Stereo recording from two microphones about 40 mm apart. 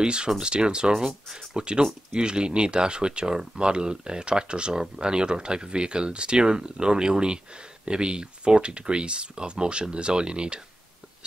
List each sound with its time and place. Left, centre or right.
0.0 s speech: right